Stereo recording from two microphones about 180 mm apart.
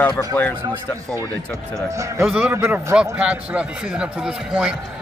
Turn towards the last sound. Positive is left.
turn(degrees=-5)  # may be behind; listen again after turning